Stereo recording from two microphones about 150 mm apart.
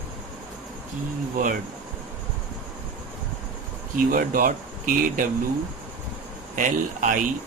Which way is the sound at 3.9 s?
65° right (ahead or behind).